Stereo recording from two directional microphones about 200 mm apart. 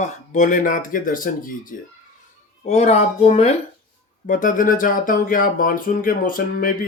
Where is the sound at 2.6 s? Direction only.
35° left (ahead or behind).